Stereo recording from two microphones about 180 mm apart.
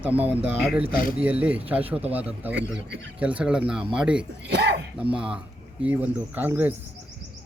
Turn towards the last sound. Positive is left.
turn(degrees=-10)  # may be behind; listen again after turning